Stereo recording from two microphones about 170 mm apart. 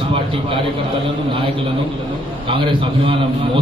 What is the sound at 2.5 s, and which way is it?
Speech, 30° right (ahead or behind).